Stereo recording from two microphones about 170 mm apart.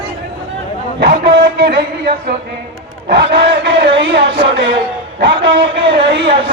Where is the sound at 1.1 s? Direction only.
70° right (ahead or behind).